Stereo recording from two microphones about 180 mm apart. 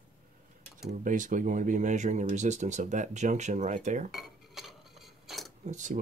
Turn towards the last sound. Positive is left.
turn(degrees=-45)  # may be behind; listen again after turning